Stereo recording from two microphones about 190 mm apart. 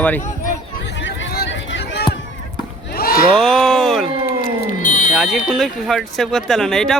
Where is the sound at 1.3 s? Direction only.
65° left (ahead or behind).